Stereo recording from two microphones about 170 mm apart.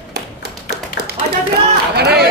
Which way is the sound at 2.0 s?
70° right (ahead or behind).